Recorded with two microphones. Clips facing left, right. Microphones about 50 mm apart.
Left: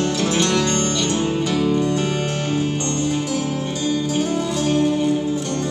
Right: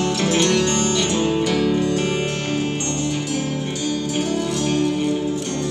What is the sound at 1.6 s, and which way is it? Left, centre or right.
Music, right.